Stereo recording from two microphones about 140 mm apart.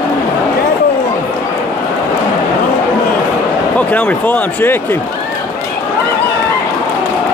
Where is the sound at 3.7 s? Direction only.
10° left (ahead or behind).